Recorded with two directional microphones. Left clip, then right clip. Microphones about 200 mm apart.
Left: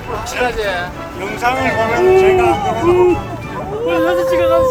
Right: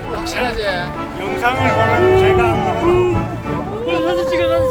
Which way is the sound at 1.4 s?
5° left (ahead or behind).